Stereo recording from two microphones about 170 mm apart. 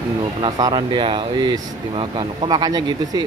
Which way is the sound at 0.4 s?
25° right (ahead or behind).